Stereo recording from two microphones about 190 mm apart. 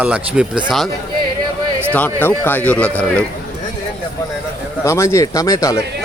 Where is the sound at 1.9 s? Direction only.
10° left (ahead or behind).